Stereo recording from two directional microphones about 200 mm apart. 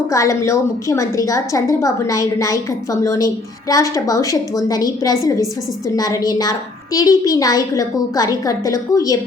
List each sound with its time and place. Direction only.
0.1 s a woman's voice: 15° left (ahead or behind)